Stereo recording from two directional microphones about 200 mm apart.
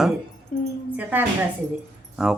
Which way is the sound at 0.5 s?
45° left (ahead or behind).